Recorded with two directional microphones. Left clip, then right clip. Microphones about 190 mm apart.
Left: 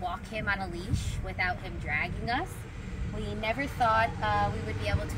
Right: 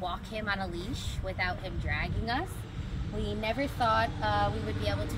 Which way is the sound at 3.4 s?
5° right (ahead or behind).